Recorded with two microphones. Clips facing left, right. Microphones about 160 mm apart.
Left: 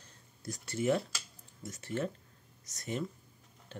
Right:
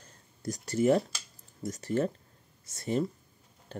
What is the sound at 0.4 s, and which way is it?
Speech, 40° right (ahead or behind).